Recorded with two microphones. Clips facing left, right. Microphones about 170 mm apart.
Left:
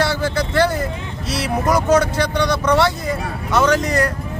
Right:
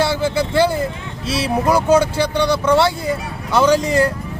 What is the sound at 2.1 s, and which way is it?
Speech, 30° right (ahead or behind).